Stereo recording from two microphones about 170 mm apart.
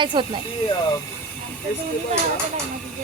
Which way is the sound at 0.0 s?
30° right (ahead or behind).